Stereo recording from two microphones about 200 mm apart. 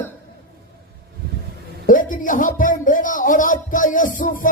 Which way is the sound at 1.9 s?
40° left (ahead or behind).